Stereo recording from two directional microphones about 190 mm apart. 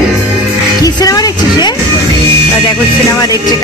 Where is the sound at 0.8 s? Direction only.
20° left (ahead or behind).